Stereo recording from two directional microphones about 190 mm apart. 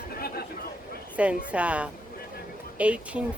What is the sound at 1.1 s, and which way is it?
Speech, 5° right (ahead or behind).